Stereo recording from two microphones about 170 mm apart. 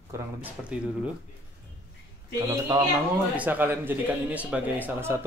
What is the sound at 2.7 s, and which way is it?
Speech, 20° right (ahead or behind).